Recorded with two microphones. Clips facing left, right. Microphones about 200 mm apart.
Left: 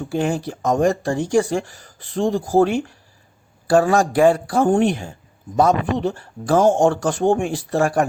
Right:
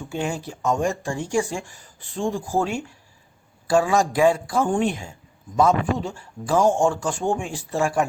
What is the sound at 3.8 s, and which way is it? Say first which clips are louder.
Speech: left 4 dB; 60° left (ahead or behind).